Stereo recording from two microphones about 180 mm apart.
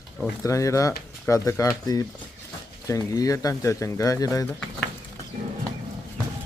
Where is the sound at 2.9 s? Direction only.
20° left (ahead or behind).